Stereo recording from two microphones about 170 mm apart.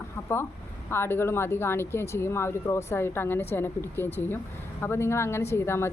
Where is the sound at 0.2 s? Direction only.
10° left (ahead or behind).